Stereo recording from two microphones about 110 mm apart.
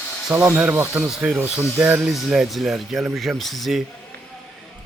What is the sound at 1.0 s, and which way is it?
Speech, 5° right (ahead or behind).